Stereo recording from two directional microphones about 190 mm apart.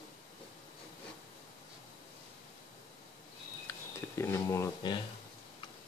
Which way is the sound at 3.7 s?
15° left (ahead or behind).